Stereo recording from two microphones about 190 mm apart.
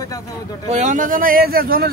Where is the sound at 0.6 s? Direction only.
40° right (ahead or behind).